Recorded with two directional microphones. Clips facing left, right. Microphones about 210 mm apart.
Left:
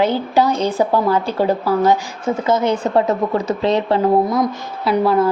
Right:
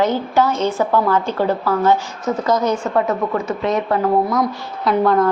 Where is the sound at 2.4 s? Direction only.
25° left (ahead or behind).